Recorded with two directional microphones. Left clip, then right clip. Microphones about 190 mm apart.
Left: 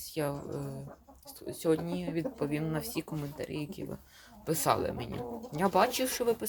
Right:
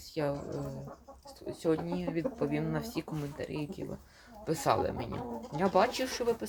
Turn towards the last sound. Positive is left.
turn(degrees=25)  # may be behind; listen again after turning